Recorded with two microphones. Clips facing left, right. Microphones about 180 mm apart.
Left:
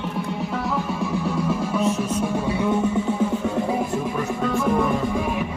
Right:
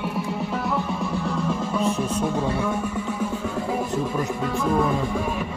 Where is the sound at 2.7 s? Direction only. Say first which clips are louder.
Left 5 dB; 25° left (ahead or behind).